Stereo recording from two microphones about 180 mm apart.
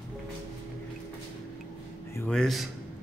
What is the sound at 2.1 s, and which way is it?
Speech, 5° left (ahead or behind).